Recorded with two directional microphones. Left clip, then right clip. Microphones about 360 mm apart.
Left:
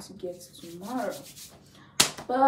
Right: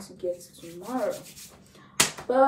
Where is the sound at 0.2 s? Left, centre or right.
Centre.